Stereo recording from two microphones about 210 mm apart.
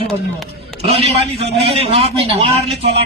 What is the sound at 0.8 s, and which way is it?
A man's voice, 30° right (ahead or behind).